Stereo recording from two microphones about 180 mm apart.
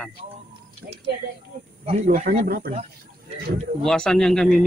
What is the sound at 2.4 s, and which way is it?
Speech, 55° right (ahead or behind).